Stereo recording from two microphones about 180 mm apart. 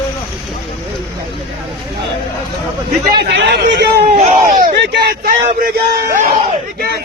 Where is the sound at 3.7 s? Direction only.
65° right (ahead or behind).